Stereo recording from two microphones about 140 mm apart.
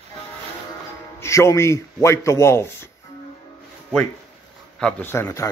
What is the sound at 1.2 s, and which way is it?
Speech, 20° left (ahead or behind).